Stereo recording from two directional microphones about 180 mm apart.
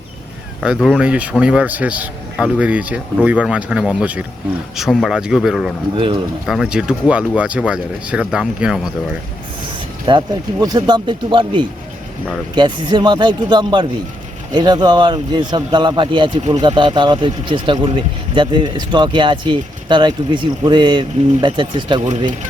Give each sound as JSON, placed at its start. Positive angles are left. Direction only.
{"t": 0.6, "sound": "a man's voice", "side_deg": 0}
{"t": 10.1, "sound": "speech", "side_deg": -25}